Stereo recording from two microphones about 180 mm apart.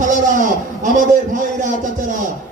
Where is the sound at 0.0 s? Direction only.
45° right (ahead or behind).